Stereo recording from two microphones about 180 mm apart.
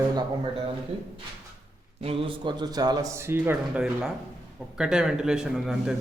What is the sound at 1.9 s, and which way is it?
A man's voice, 30° right (ahead or behind).